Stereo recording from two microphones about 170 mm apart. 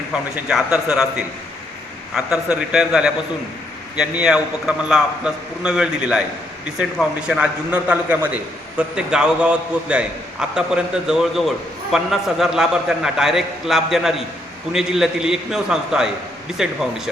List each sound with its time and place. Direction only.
0.4 s a man's voice: 5° right (ahead or behind)
2.1 s a man's voice: 5° right (ahead or behind)